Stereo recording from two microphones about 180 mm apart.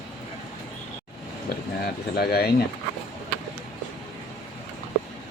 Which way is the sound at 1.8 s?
60° left (ahead or behind).